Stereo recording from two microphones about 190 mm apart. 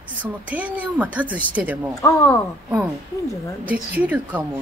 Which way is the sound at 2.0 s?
15° left (ahead or behind).